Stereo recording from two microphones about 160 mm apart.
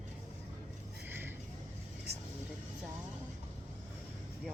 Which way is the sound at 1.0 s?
15° right (ahead or behind).